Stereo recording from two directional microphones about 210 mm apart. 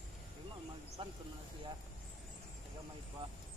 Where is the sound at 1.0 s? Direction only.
25° right (ahead or behind).